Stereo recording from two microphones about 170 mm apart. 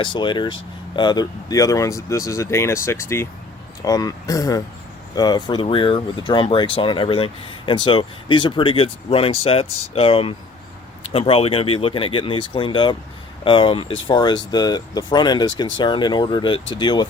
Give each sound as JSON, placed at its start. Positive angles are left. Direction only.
{"t": 0.0, "sound": "speech", "side_deg": 30}